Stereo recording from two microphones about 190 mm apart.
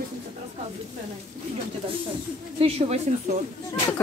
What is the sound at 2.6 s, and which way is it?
Speech, 30° right (ahead or behind).